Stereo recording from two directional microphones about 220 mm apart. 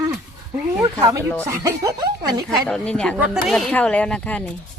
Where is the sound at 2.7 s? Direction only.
5° left (ahead or behind).